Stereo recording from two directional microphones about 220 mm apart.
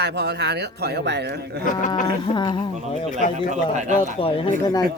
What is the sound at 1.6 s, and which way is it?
Speech, 35° left (ahead or behind).